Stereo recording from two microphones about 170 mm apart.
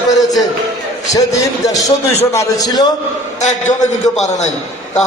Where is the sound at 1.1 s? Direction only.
20° left (ahead or behind).